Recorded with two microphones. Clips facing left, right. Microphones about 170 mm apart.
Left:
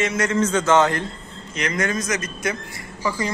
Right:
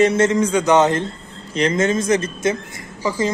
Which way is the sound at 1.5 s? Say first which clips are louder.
Right 6 dB; 30° right (ahead or behind).